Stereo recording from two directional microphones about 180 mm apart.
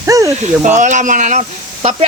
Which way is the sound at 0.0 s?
15° right (ahead or behind).